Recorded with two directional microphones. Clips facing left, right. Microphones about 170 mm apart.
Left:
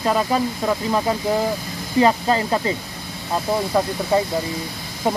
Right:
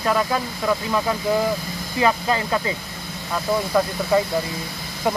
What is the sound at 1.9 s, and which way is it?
Speech, 30° left (ahead or behind).